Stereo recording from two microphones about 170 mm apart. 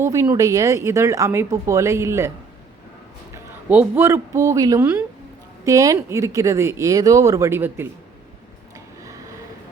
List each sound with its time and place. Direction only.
0.0 s speech: 15° right (ahead or behind)
3.3 s a man's voice: 10° right (ahead or behind)